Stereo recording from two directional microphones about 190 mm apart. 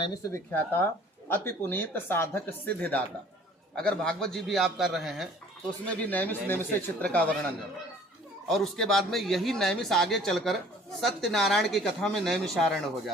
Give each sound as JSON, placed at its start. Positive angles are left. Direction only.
{"t": 0.0, "sound": "a man's voice", "side_deg": 15}
{"t": 6.1, "sound": "speech", "side_deg": 10}
{"t": 8.4, "sound": "a man's voice", "side_deg": 0}